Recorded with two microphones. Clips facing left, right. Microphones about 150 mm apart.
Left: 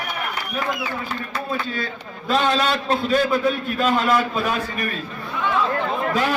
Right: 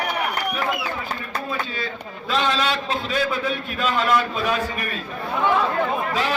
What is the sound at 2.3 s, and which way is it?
Speech, 45° left (ahead or behind).